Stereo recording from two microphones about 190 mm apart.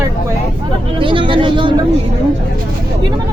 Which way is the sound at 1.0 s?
25° right (ahead or behind).